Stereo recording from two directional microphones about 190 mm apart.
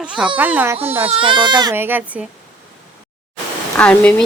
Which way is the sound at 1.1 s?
25° right (ahead or behind).